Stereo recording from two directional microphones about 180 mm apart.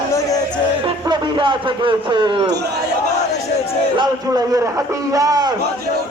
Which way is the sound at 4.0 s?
20° right (ahead or behind).